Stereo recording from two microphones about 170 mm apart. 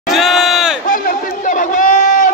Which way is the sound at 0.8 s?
50° left (ahead or behind).